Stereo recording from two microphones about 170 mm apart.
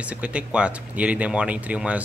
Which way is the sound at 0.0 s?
5° right (ahead or behind).